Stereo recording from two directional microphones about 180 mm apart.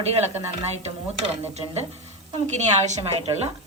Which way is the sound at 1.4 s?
35° right (ahead or behind).